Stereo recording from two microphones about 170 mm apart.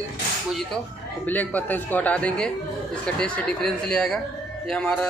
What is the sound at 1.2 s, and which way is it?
Speech, 10° left (ahead or behind).